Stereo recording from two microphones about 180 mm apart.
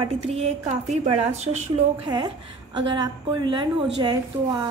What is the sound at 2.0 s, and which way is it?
A woman's voice, 25° right (ahead or behind).